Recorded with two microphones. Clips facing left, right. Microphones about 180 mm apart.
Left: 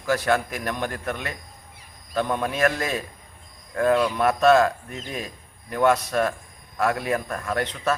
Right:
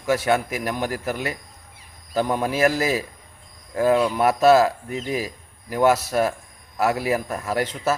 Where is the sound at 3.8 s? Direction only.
25° right (ahead or behind).